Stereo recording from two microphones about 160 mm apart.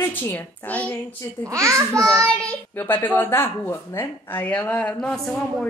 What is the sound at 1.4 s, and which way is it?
Speech, 20° right (ahead or behind).